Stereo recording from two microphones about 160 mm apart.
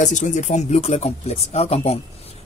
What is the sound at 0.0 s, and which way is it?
Speech, 50° left (ahead or behind).